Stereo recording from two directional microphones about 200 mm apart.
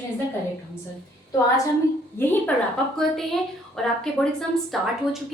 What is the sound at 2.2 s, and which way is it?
Speech, 10° left (ahead or behind).